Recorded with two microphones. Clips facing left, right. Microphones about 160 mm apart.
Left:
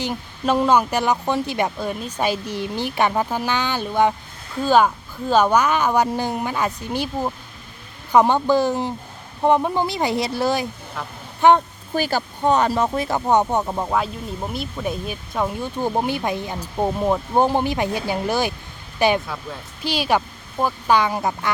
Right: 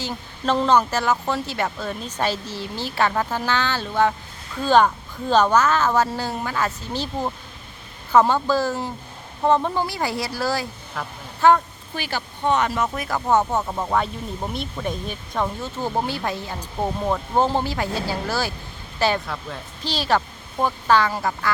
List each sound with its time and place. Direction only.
0.0 s speech: 15° left (ahead or behind)
11.0 s speech: centre (ahead or behind)
11.3 s speech: 20° left (ahead or behind)
11.9 s speech: 40° left (ahead or behind); by 13.8 s 15° left (ahead or behind)
13.8 s speech: 5° left (ahead or behind); by 21.5 s 20° left (ahead or behind)